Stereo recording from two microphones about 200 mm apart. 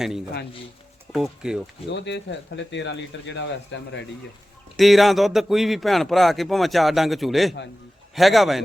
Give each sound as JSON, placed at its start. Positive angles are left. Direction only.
{"t": 1.1, "sound": "speech", "side_deg": 0}
{"t": 1.9, "sound": "speech", "side_deg": 60}
{"t": 4.8, "sound": "speech", "side_deg": 0}